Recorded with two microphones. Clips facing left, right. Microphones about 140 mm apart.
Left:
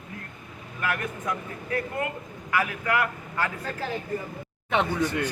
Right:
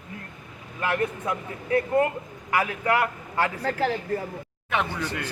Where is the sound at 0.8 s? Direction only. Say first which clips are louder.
Right 4 dB; 25° right (ahead or behind).